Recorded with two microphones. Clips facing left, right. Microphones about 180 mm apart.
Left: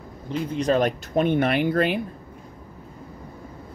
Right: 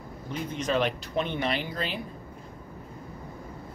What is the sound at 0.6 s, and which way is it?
Speech, 40° left (ahead or behind).